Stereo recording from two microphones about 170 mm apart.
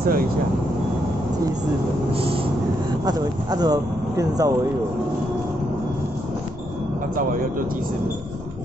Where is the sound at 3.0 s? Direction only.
25° right (ahead or behind).